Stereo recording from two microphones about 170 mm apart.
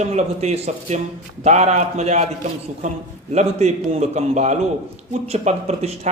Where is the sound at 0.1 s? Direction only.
40° right (ahead or behind).